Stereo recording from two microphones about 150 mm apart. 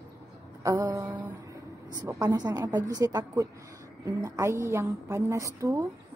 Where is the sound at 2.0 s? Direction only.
25° right (ahead or behind).